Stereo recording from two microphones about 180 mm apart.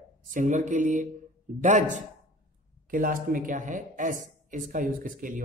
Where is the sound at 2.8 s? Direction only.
50° right (ahead or behind).